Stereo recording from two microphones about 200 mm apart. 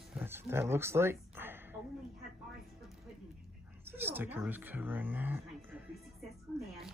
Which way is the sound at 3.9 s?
10° right (ahead or behind).